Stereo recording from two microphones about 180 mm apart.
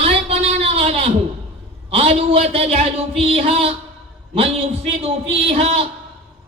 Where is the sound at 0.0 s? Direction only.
30° right (ahead or behind).